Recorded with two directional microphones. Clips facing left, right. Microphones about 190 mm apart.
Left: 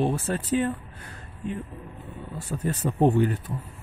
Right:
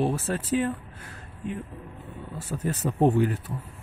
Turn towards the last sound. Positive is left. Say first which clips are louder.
# left 1 dB
turn(degrees=-5)  # may be behind; listen again after turning